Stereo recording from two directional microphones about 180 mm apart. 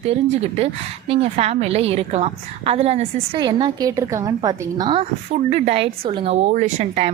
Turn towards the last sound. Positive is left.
turn(degrees=-40)  # may be behind; listen again after turning